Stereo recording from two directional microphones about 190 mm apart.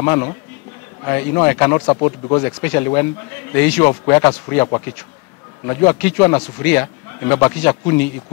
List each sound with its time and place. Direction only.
0.0 s speech: 15° left (ahead or behind)
5.7 s speech: 15° left (ahead or behind)